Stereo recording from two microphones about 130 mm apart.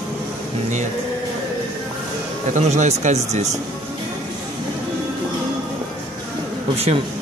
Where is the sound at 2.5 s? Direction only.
65° right (ahead or behind).